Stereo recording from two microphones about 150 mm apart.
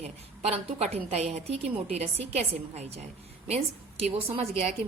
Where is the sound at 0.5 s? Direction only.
45° right (ahead or behind).